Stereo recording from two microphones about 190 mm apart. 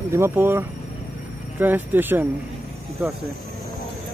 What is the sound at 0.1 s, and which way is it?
Speech, 15° right (ahead or behind).